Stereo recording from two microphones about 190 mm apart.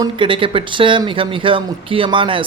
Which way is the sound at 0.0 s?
25° right (ahead or behind).